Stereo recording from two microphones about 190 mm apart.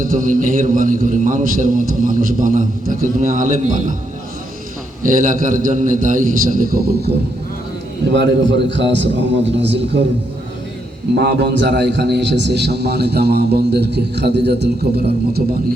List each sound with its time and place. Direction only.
0.0 s a man's voice: 45° right (ahead or behind)
5.0 s a man's voice: 45° right (ahead or behind)
8.1 s a man's voice: 70° right (ahead or behind)
11.1 s a man's voice: 60° right (ahead or behind)